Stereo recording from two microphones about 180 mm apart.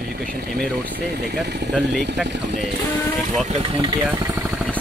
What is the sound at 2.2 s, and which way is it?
Speech, 75° right (ahead or behind).